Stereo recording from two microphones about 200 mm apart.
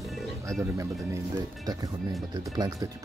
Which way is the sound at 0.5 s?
15° right (ahead or behind).